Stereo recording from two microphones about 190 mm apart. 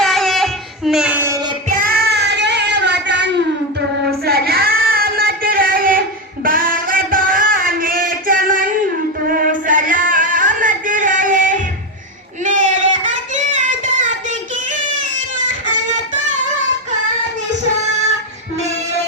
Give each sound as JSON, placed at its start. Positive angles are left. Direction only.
{"t": 0.0, "sound": "child singing", "side_deg": 0}
{"t": 1.8, "sound": "child singing", "side_deg": -50}
{"t": 6.4, "sound": "singing", "side_deg": -50}
{"t": 9.4, "sound": "a sound", "side_deg": -45}